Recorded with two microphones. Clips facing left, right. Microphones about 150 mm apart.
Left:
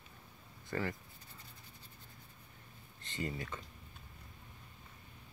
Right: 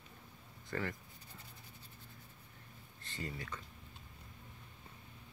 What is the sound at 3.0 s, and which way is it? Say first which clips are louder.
Speech: left 4 dB; 20° left (ahead or behind).